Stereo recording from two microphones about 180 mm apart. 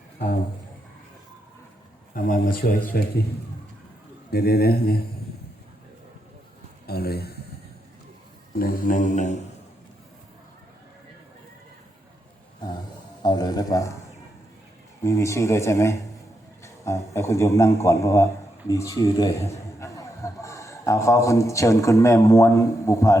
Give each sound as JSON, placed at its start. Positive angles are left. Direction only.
{"t": 2.1, "sound": "mantra", "side_deg": 50}
{"t": 4.3, "sound": "speech", "side_deg": 60}
{"t": 6.8, "sound": "a man's voice", "side_deg": 60}
{"t": 8.5, "sound": "mantra", "side_deg": 55}
{"t": 13.2, "sound": "speech", "side_deg": 20}
{"t": 15.0, "sound": "a man's voice", "side_deg": 15}